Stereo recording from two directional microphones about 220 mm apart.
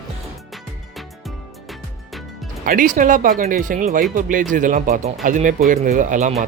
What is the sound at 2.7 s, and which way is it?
A man's voice, 35° right (ahead or behind).